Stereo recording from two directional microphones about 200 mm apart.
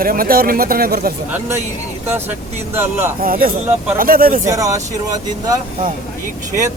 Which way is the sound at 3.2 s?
45° right (ahead or behind).